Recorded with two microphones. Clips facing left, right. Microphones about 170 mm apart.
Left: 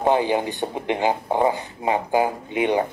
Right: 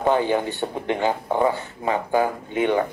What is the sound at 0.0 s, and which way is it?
Speech, 20° left (ahead or behind).